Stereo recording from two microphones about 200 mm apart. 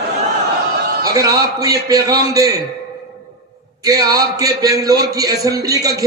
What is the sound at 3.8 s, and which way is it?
A man's voice, 20° right (ahead or behind).